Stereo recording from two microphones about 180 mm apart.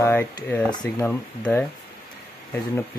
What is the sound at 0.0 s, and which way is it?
Speech, 15° left (ahead or behind).